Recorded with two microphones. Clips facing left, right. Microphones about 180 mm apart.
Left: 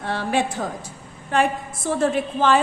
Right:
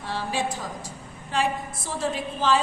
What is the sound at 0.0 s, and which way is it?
A woman's voice, 60° left (ahead or behind).